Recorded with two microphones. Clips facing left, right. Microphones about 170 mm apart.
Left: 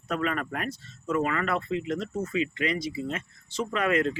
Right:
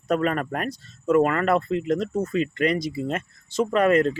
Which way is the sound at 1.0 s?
55° right (ahead or behind).